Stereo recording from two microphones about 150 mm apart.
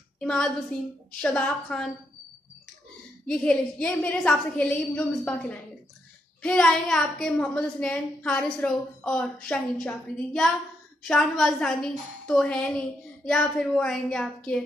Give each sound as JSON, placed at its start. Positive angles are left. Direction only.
{"t": 0.2, "sound": "a sound", "side_deg": 5}
{"t": 1.2, "sound": "a woman's voice", "side_deg": 5}
{"t": 3.3, "sound": "a woman's voice", "side_deg": 5}